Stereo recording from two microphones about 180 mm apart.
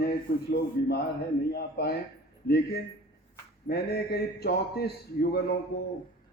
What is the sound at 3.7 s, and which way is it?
A man's voice, 60° left (ahead or behind).